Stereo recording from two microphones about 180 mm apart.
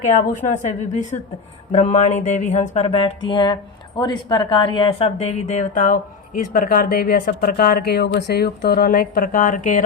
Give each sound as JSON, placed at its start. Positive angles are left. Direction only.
{"t": 0.0, "sound": "speech", "side_deg": 45}